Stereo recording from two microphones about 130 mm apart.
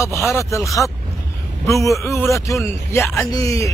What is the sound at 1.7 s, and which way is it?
Speech, 25° left (ahead or behind).